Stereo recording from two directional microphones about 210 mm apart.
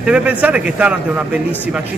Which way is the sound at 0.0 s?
5° right (ahead or behind).